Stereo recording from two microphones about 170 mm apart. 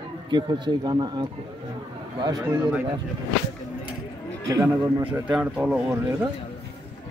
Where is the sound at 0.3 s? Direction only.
25° right (ahead or behind).